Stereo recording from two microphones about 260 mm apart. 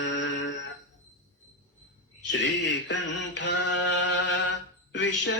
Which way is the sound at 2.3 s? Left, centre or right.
Left.